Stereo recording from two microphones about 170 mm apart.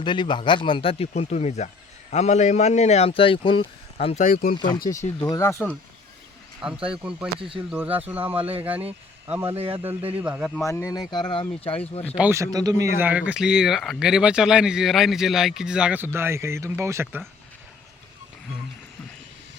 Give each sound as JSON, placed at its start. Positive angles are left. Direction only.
{"t": 0.0, "sound": "speech", "side_deg": 25}
{"t": 4.0, "sound": "speech", "side_deg": 45}
{"t": 4.5, "sound": "speech", "side_deg": 25}
{"t": 6.9, "sound": "speech", "side_deg": -5}
{"t": 7.3, "sound": "speech", "side_deg": -30}
{"t": 7.7, "sound": "speech", "side_deg": -10}
{"t": 9.6, "sound": "speech", "side_deg": -30}
{"t": 10.2, "sound": "speech", "side_deg": -10}
{"t": 10.7, "sound": "speech", "side_deg": 20}
{"t": 12.1, "sound": "speech", "side_deg": -10}
{"t": 13.0, "sound": "speech", "side_deg": -10}